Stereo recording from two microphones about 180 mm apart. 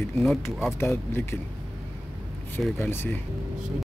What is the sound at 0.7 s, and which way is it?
Speech, 15° left (ahead or behind).